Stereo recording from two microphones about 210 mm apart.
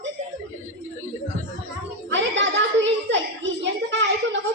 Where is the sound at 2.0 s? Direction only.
60° right (ahead or behind).